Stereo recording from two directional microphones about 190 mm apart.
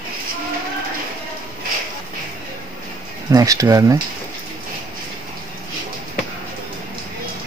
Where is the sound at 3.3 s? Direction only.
20° right (ahead or behind).